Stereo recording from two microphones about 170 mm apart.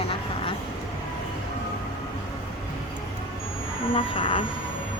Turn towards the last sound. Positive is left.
turn(degrees=30)  # may be behind; listen again after turning